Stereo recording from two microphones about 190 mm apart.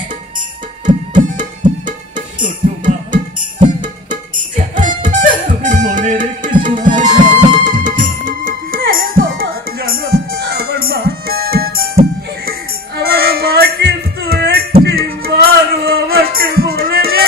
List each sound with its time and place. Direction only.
0.8 s music: 40° right (ahead or behind)
2.8 s music: 45° right (ahead or behind)
4.7 s music: 45° right (ahead or behind)